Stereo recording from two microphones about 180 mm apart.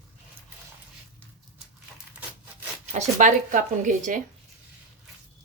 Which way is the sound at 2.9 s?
45° right (ahead or behind).